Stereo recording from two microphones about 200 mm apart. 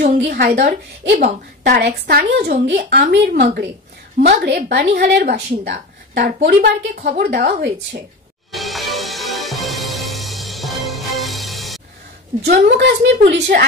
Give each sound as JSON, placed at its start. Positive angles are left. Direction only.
{"t": 0.3, "sound": "speech", "side_deg": -45}
{"t": 8.5, "sound": "music", "side_deg": 0}
{"t": 12.4, "sound": "a woman's voice", "side_deg": -55}